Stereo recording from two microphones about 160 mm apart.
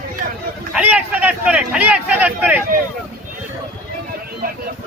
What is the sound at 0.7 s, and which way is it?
Speech, 5° right (ahead or behind).